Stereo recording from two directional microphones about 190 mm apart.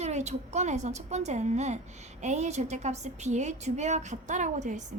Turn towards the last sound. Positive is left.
turn(degrees=-40)  # may be behind; listen again after turning